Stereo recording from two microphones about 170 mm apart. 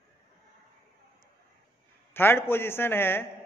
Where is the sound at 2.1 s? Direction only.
15° left (ahead or behind).